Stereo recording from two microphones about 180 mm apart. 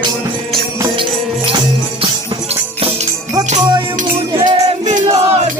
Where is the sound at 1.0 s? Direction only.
30° right (ahead or behind).